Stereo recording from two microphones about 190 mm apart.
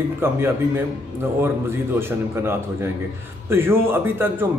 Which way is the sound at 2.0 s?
10° right (ahead or behind).